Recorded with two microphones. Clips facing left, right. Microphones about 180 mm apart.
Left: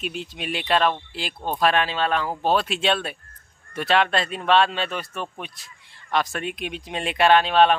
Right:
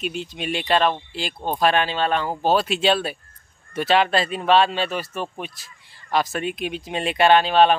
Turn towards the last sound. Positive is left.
turn(degrees=0)  # may be behind; listen again after turning